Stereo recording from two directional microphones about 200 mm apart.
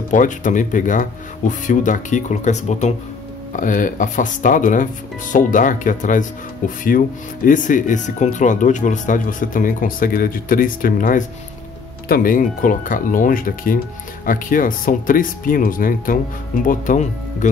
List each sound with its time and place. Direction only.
0.1 s speech: 40° left (ahead or behind)